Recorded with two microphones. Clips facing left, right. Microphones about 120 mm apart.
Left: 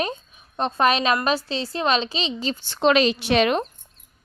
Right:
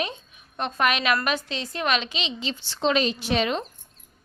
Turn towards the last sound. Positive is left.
turn(degrees=70)  # may be behind; listen again after turning